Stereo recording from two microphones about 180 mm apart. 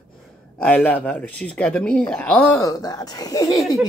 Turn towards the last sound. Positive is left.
turn(degrees=20)  # may be behind; listen again after turning